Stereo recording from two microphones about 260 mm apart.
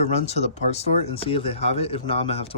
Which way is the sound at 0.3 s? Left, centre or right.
Left.